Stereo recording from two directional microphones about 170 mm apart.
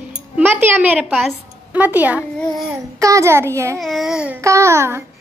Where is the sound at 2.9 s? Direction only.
20° right (ahead or behind).